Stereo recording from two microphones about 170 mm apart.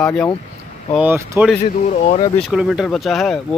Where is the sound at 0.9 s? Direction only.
15° right (ahead or behind).